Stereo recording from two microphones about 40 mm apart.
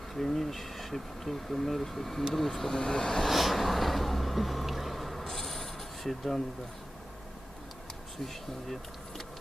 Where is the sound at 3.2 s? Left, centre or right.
Centre.